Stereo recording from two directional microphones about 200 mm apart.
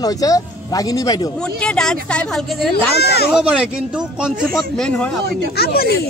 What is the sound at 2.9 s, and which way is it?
Speech, 55° left (ahead or behind).